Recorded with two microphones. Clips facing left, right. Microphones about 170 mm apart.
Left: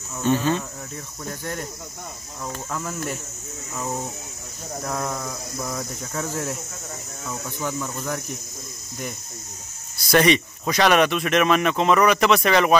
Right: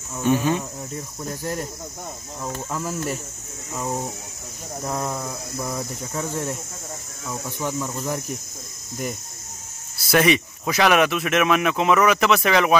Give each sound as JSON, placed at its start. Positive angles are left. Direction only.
{"t": 0.2, "sound": "speech", "side_deg": -10}
{"t": 1.4, "sound": "speech", "side_deg": -35}
{"t": 2.7, "sound": "speech", "side_deg": -5}
{"t": 9.9, "sound": "speech", "side_deg": -5}